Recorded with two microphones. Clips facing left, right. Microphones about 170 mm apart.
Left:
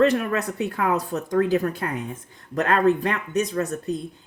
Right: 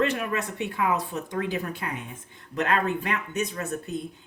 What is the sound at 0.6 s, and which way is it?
Speech, 40° left (ahead or behind).